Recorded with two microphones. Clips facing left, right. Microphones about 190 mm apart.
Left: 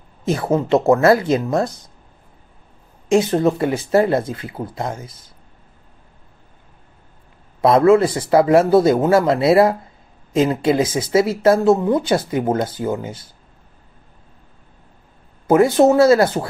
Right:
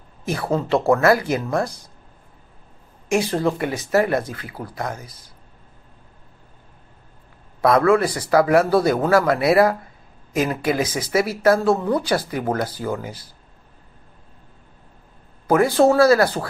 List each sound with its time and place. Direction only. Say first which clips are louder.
0.2 s speech: left 4 dB; 20° left (ahead or behind)
3.1 s speech: left 5 dB; 20° left (ahead or behind)
7.6 s speech: left 4 dB; 25° left (ahead or behind)
15.4 s speech: left 3 dB; 25° left (ahead or behind)